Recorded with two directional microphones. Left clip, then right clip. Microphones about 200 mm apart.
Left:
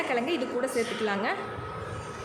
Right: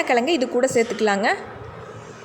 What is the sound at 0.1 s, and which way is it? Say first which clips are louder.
A woman's voice: right 9 dB; 35° right (ahead or behind).